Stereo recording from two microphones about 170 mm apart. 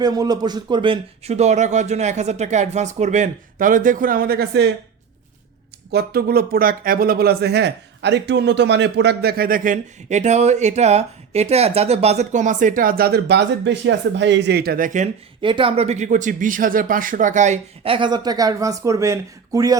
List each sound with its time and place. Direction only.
0.0 s speech: 20° right (ahead or behind); by 4.7 s 75° right (ahead or behind)
5.9 s speech: 65° right (ahead or behind); by 15.1 s 50° right (ahead or behind)
15.4 s speech: 30° right (ahead or behind)
17.9 s speech: 25° right (ahead or behind)